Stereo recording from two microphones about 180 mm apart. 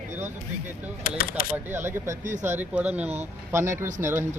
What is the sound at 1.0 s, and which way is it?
Speech, 55° left (ahead or behind).